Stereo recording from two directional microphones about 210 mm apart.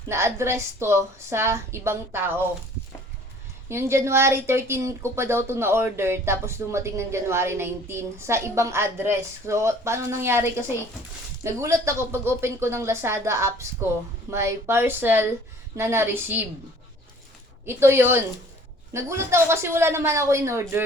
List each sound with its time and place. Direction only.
0.1 s speech: 10° right (ahead or behind)
3.7 s speech: 10° right (ahead or behind)
17.7 s speech: 10° right (ahead or behind)